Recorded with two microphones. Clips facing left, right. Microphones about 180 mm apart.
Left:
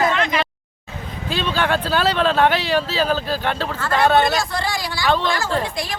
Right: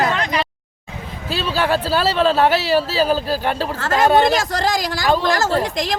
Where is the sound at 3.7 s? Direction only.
45° right (ahead or behind).